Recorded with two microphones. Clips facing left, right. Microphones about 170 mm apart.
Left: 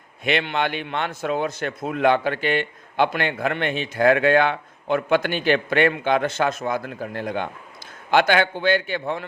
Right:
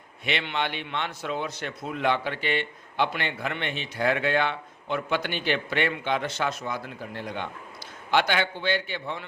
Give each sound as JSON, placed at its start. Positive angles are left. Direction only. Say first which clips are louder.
{"t": 0.3, "sound": "a man's voice", "louder": "left 6 dB", "side_deg": 50}